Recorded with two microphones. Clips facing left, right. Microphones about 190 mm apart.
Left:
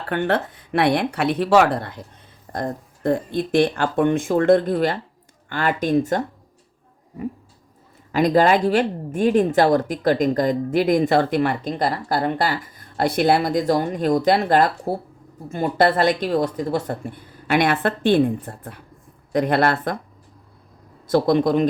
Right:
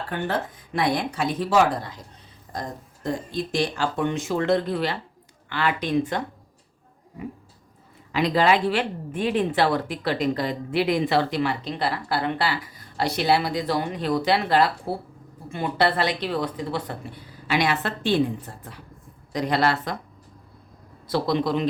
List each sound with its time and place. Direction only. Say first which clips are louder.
0.1 s a woman's voice: left 7 dB; 65° left (ahead or behind); by 6.2 s 45° left (ahead or behind)
8.1 s a woman's voice: left 4 dB; 45° left (ahead or behind)
21.1 s a woman's voice: left 6 dB; 50° left (ahead or behind)